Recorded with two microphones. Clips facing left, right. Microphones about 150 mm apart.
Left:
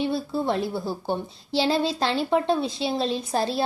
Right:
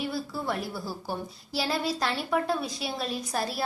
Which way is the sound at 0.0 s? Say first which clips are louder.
Left 7 dB; 25° left (ahead or behind).